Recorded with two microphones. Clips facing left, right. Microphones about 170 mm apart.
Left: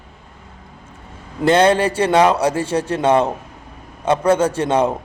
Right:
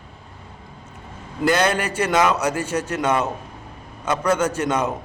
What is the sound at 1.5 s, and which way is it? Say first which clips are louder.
A man's voice: left 6 dB; 30° left (ahead or behind).